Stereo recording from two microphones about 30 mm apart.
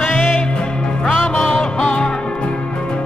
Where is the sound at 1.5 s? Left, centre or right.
Left.